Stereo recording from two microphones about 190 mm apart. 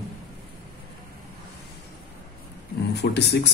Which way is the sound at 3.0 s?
60° left (ahead or behind).